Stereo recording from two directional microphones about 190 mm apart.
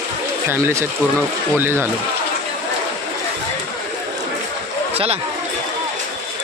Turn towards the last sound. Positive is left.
turn(degrees=-30)  # may be behind; listen again after turning